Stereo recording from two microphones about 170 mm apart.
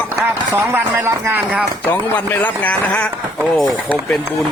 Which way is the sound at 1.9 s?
10° left (ahead or behind).